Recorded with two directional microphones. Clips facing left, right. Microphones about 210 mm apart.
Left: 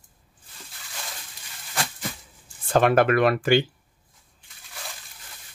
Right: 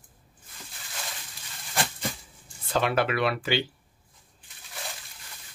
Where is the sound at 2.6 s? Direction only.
50° left (ahead or behind).